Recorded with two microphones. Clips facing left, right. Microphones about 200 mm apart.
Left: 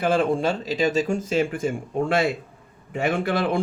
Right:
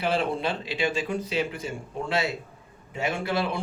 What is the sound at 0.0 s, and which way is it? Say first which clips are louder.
Speech: left 5 dB; 50° left (ahead or behind).